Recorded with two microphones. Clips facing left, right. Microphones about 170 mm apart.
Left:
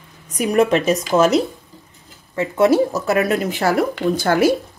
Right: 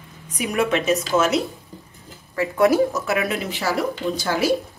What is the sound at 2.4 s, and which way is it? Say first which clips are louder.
A woman's voice: left 2 dB; 25° left (ahead or behind).